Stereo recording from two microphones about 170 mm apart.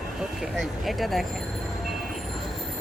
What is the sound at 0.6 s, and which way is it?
Speech, centre (ahead or behind).